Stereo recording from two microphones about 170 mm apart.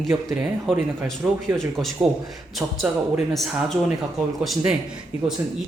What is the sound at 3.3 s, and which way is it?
Speech, centre (ahead or behind).